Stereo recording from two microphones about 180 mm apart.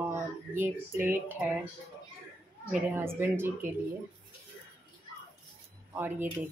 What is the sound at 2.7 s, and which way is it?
Speech, 10° right (ahead or behind).